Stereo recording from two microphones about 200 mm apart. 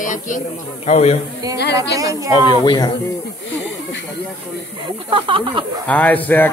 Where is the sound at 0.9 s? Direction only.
35° left (ahead or behind).